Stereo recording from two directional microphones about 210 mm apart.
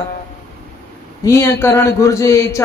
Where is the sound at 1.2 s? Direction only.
15° left (ahead or behind).